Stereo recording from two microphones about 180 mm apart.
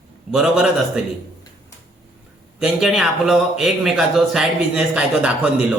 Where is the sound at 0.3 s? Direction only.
5° right (ahead or behind).